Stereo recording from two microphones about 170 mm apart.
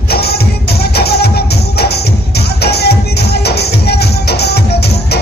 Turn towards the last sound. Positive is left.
turn(degrees=70)  # may be behind; listen again after turning